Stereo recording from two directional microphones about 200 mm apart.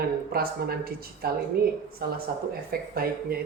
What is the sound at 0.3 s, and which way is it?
Speech, 50° right (ahead or behind).